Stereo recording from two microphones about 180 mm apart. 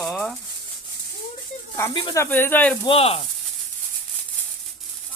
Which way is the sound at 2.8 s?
35° left (ahead or behind).